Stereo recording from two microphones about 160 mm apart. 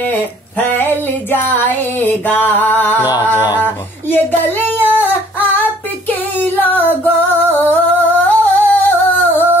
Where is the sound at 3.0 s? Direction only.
25° left (ahead or behind).